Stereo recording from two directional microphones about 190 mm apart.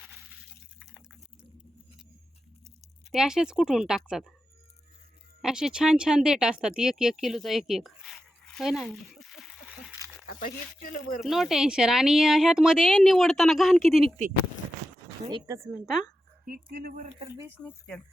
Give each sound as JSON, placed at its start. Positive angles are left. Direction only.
{"t": 3.1, "sound": "speech", "side_deg": -5}
{"t": 5.4, "sound": "speech", "side_deg": 0}
{"t": 8.5, "sound": "a sound", "side_deg": 0}
{"t": 10.8, "sound": "speech", "side_deg": 45}
{"t": 11.2, "sound": "speech", "side_deg": 0}
{"t": 15.2, "sound": "speech", "side_deg": -25}
{"t": 15.6, "sound": "speech", "side_deg": 0}
{"t": 16.5, "sound": "speech", "side_deg": -55}
{"t": 17.2, "sound": "speech", "side_deg": -15}
{"t": 17.7, "sound": "speech", "side_deg": 5}